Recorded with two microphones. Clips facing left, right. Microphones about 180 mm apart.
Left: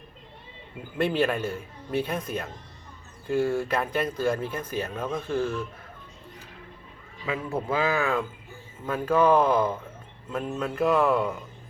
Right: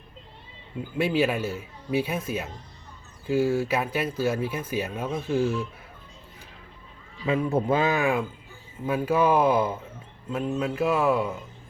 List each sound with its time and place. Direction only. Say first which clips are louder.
0.9 s speech: right 1 dB; 5° right (ahead or behind)
7.3 s speech: right 5 dB; 20° right (ahead or behind); by 11.3 s centre (ahead or behind)